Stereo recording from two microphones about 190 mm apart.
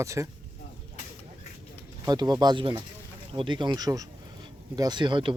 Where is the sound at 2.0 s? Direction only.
20° right (ahead or behind).